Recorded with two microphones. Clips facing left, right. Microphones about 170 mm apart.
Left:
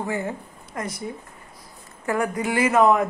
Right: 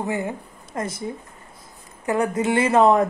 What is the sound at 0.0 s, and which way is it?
Speech, 20° right (ahead or behind).